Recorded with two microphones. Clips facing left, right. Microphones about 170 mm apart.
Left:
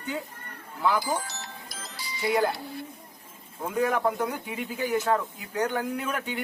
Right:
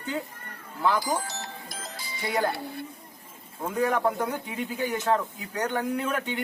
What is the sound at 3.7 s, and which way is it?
A man's voice, 5° left (ahead or behind).